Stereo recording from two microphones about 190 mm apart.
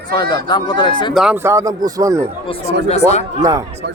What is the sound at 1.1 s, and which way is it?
Speech, centre (ahead or behind).